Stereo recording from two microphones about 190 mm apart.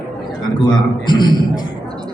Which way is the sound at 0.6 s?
25° left (ahead or behind).